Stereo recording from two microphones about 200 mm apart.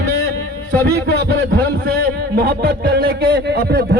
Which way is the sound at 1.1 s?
55° right (ahead or behind).